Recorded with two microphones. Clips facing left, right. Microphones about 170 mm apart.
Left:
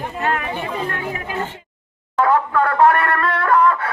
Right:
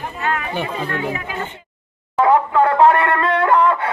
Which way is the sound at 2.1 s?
20° right (ahead or behind).